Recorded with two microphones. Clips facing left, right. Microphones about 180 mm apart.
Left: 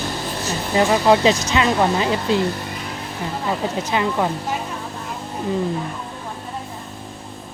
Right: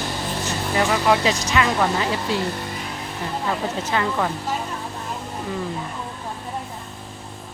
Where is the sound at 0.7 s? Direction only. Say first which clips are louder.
Left 4 dB; 25° left (ahead or behind).